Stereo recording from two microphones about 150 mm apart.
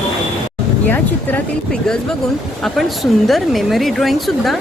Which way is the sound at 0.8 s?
10° left (ahead or behind).